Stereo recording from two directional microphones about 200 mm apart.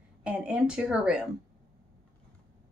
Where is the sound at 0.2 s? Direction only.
5° right (ahead or behind).